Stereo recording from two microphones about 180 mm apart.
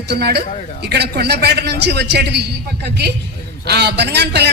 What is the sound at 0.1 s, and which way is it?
A man's voice, 65° right (ahead or behind).